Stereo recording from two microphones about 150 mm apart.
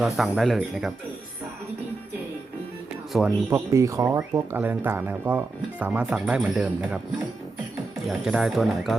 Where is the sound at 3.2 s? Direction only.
20° right (ahead or behind).